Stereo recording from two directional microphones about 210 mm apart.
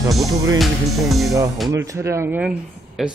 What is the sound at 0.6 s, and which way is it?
Speech, centre (ahead or behind).